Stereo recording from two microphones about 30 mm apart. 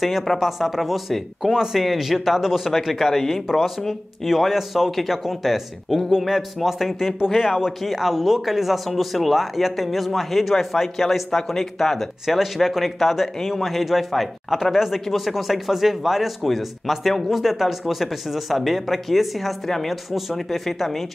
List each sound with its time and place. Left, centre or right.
0.4 s a man's voice: centre
1.5 s speech: centre
1.8 s a man's voice: centre
4.5 s a man's voice: centre
20.1 s a man's voice: centre
20.3 s a man's voice: centre